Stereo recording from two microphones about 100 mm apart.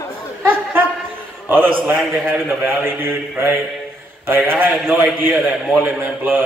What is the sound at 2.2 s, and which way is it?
A man's voice, 20° right (ahead or behind).